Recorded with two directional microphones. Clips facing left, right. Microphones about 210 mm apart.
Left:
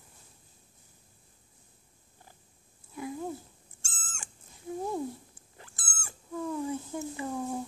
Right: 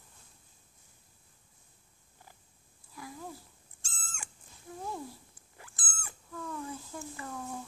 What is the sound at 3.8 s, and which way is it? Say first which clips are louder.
Owl: even; 45° left (ahead or behind).